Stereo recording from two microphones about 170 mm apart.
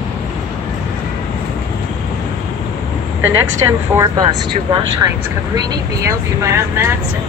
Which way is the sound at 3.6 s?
20° right (ahead or behind).